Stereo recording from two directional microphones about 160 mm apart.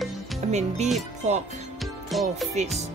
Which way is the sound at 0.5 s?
45° right (ahead or behind).